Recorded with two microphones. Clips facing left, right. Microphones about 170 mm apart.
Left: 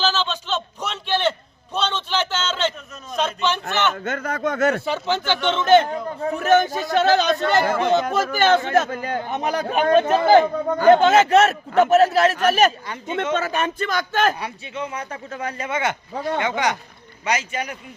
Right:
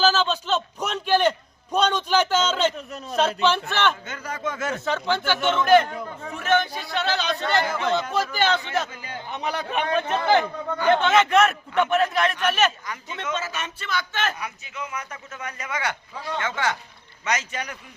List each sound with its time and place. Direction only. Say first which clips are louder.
0.0 s a sound: right 2 dB; 10° right (ahead or behind)
3.2 s a man's voice: right 2 dB; 5° right (ahead or behind)
3.9 s speech: left 8 dB; 65° left (ahead or behind)
4.9 s speech: left 1 dB; 15° left (ahead or behind)
5.9 s a man's voice: left 8 dB; 40° left (ahead or behind)
13.3 s speech: left 6 dB; 55° left (ahead or behind)
14.3 s a man's voice: left 5 dB; 30° left (ahead or behind)
16.1 s speech: left 7 dB; 50° left (ahead or behind)
16.4 s speech: left 1 dB; 15° left (ahead or behind)